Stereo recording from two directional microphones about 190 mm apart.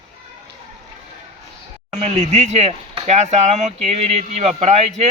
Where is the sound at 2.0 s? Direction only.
35° right (ahead or behind).